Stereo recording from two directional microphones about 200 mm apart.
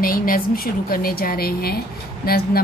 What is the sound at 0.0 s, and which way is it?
A woman's voice, 45° left (ahead or behind).